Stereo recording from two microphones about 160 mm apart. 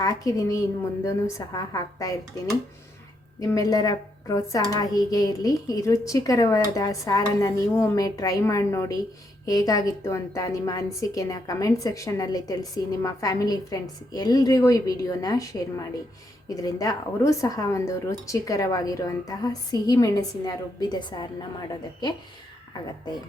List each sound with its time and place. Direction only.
0.0 s a woman's voice: 20° left (ahead or behind)
3.4 s a woman's voice: 20° left (ahead or behind)